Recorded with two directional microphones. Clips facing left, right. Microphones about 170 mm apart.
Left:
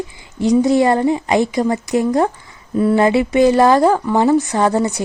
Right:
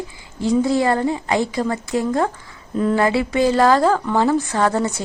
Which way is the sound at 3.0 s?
20° left (ahead or behind).